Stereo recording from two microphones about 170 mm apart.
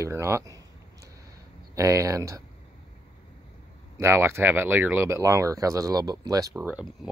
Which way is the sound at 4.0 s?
15° right (ahead or behind).